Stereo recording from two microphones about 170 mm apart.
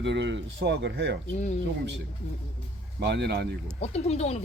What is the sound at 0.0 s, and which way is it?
Speech, 90° right.